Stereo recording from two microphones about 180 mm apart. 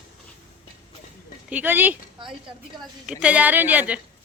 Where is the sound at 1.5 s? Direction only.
10° right (ahead or behind).